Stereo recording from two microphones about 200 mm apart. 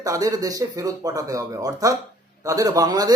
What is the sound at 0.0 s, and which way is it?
Speech, 15° right (ahead or behind).